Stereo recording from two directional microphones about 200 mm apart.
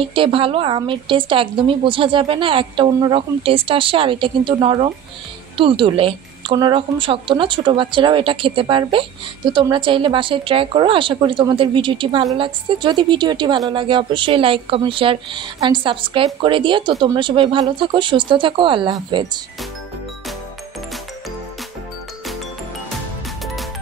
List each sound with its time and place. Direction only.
0.0 s a woman's voice: 25° right (ahead or behind)
23.4 s music: centre (ahead or behind)